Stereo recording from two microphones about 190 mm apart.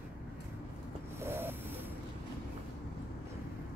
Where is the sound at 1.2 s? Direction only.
10° right (ahead or behind).